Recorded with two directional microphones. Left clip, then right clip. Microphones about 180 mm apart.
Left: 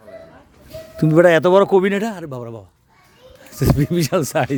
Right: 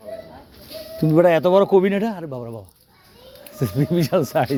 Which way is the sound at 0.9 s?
50° left (ahead or behind).